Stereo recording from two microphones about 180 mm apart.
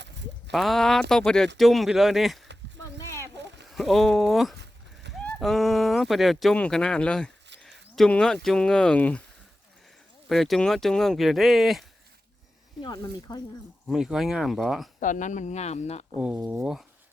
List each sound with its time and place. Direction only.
0.5 s speech: centre (ahead or behind)
3.0 s a sound: 15° left (ahead or behind)
3.3 s a sound: 75° right (ahead or behind)
3.7 s speech: centre (ahead or behind)
4.5 s a sound: 70° right (ahead or behind)
5.1 s speech: centre (ahead or behind)
7.6 s a sound: centre (ahead or behind)
8.4 s speech: 5° left (ahead or behind)
10.2 s speech: centre (ahead or behind)
12.8 s speech: 25° left (ahead or behind)
13.8 s speech: centre (ahead or behind)
15.0 s speech: 45° left (ahead or behind)
16.2 s speech: 5° right (ahead or behind)